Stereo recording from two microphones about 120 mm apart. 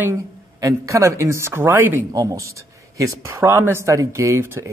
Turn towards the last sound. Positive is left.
turn(degrees=-20)  # may be behind; listen again after turning